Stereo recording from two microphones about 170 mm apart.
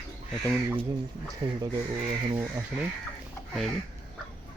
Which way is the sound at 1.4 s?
35° right (ahead or behind).